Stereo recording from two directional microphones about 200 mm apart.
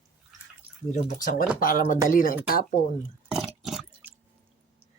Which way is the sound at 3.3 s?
Centre (ahead or behind).